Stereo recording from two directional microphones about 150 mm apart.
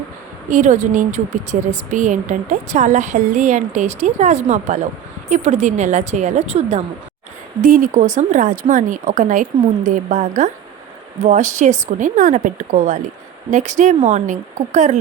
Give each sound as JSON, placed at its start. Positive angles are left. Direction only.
{"t": 0.5, "sound": "a woman's voice", "side_deg": -55}
{"t": 7.6, "sound": "a woman's voice", "side_deg": -60}